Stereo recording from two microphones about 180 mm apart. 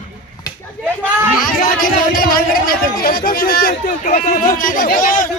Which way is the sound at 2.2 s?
55° left (ahead or behind).